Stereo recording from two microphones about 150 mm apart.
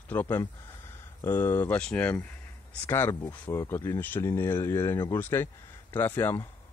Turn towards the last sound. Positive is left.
turn(degrees=15)  # may be behind; listen again after turning